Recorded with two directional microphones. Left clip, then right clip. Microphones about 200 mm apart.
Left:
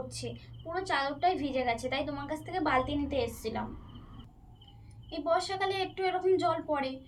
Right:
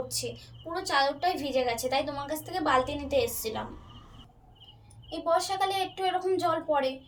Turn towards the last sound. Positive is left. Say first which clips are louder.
# right 4 dB
turn(degrees=10)  # may be behind; listen again after turning